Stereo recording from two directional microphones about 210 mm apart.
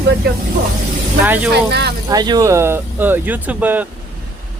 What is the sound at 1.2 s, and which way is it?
Speech, 10° right (ahead or behind).